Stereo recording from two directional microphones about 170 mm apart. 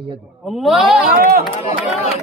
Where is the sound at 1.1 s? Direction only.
60° right (ahead or behind).